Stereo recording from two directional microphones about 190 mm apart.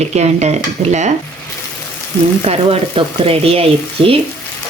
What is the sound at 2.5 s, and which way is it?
A woman's voice, 30° right (ahead or behind).